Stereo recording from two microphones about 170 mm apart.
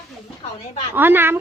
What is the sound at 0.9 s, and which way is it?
Speech, 10° right (ahead or behind).